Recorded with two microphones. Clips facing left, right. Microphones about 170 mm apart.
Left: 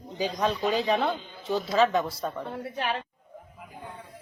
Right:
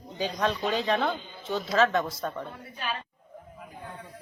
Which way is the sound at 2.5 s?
70° left (ahead or behind).